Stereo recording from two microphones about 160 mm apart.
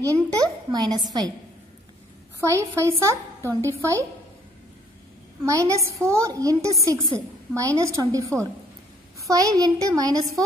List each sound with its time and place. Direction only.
0.0 s a woman's voice: 25° right (ahead or behind)
2.5 s speech: 20° right (ahead or behind)
5.4 s a woman's voice: 20° right (ahead or behind)